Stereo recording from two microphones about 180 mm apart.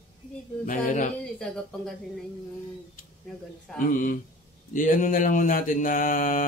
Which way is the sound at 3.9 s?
45° left (ahead or behind).